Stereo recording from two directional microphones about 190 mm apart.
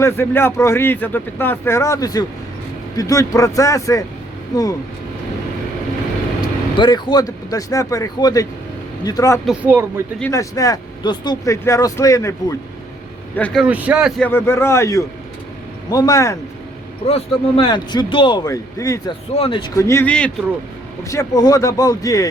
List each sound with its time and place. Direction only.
0.0 s speech: 10° left (ahead or behind)
6.4 s speech: 20° left (ahead or behind)
9.5 s speech: 10° right (ahead or behind)
10.2 s speech: 15° left (ahead or behind)
13.3 s a man's voice: 5° left (ahead or behind)
14.2 s speech: 10° left (ahead or behind)
17.1 s speech: 30° left (ahead or behind)
19.3 s speech: 30° left (ahead or behind)
19.7 s speech: 15° left (ahead or behind)
21.0 s speech: 15° left (ahead or behind)